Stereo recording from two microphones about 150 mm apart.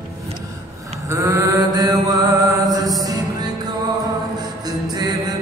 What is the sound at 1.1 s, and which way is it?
Mantra, 20° right (ahead or behind).